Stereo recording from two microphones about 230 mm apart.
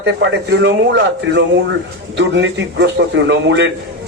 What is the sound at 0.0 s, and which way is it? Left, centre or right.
A man's voice, right.